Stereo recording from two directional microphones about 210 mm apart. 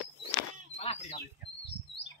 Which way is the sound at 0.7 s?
30° left (ahead or behind).